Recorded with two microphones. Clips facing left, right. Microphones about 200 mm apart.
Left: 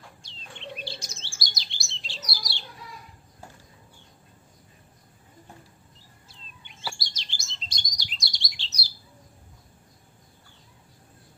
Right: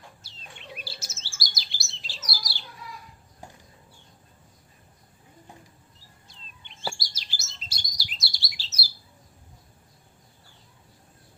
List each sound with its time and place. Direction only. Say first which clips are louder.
0.2 s bird: left 4 dB; 5° right (ahead or behind)
3.4 s a sound: right 1 dB; 15° right (ahead or behind)
6.9 s chirp: even; 5° right (ahead or behind)